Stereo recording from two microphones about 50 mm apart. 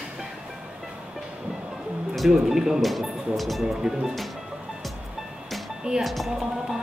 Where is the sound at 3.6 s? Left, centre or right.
Centre.